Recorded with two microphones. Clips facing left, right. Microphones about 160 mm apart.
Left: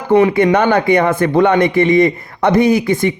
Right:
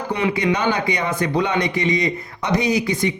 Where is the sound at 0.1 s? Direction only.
50° left (ahead or behind).